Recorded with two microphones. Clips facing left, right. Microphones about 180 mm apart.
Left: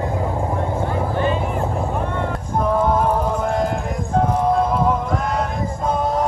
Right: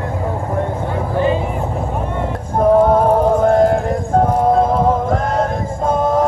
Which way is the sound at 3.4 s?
50° right (ahead or behind).